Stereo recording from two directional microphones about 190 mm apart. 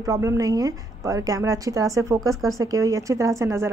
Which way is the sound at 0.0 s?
15° right (ahead or behind).